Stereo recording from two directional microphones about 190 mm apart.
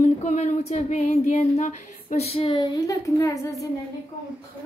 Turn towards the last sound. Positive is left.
turn(degrees=15)  # may be behind; listen again after turning